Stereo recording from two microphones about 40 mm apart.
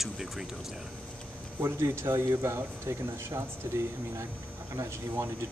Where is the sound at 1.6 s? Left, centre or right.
Right.